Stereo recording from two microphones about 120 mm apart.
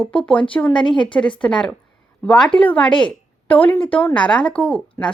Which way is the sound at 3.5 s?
15° left (ahead or behind).